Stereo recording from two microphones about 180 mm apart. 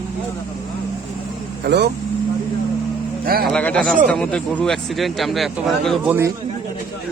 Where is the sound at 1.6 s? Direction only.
70° right (ahead or behind).